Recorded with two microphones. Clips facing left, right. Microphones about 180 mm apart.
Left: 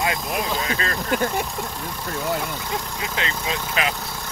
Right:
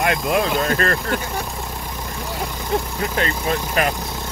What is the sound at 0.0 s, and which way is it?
Speech, 70° right (ahead or behind).